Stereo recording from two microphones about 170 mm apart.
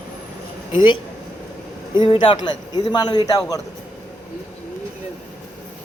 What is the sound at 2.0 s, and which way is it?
A man's voice, 30° left (ahead or behind).